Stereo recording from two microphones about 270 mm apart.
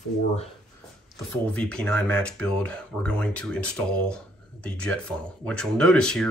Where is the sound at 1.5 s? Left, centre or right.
Centre.